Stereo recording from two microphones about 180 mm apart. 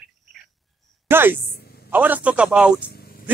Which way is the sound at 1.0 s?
10° right (ahead or behind).